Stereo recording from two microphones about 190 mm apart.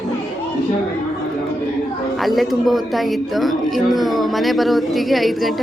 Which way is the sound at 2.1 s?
Centre (ahead or behind).